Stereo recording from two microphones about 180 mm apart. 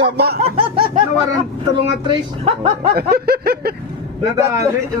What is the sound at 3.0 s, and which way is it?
Speech, 60° right (ahead or behind).